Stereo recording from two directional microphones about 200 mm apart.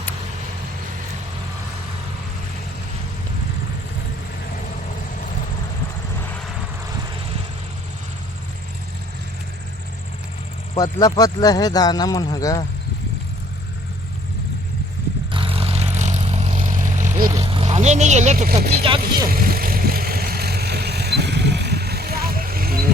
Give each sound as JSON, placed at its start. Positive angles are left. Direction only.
{"t": 11.0, "sound": "speech", "side_deg": 20}
{"t": 15.3, "sound": "vehicle", "side_deg": -25}
{"t": 18.7, "sound": "speech", "side_deg": -30}
{"t": 19.3, "sound": "vehicle", "side_deg": -45}